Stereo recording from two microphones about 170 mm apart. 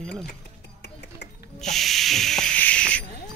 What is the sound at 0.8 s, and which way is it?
Music, 80° left.